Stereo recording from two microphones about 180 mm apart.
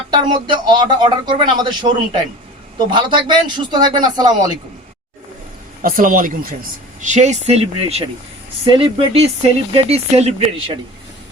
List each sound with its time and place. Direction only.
0.1 s speech: 25° right (ahead or behind)
5.8 s speech: 50° right (ahead or behind)